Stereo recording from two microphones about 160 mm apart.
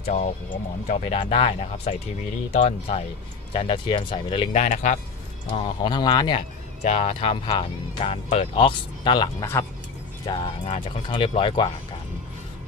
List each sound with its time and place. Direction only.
0.0 s speech: 40° left (ahead or behind)
3.5 s speech: 30° left (ahead or behind)
4.5 s speech: 50° left (ahead or behind)
5.8 s speech: 25° left (ahead or behind)
6.8 s speech: 40° left (ahead or behind)
10.6 s speech: 45° left (ahead or behind)
11.1 s speech: 35° left (ahead or behind)